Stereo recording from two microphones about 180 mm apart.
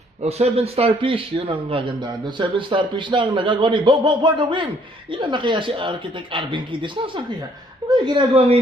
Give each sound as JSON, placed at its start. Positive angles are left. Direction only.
{"t": 0.2, "sound": "a man's voice", "side_deg": -35}